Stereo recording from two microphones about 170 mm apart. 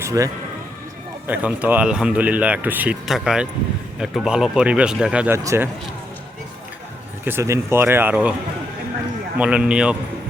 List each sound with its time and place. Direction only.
0.0 s a man's voice: 20° right (ahead or behind)
1.3 s speech: 10° right (ahead or behind)
5.4 s speech: 20° right (ahead or behind)
7.3 s speech: 15° right (ahead or behind)
9.4 s speech: 5° right (ahead or behind)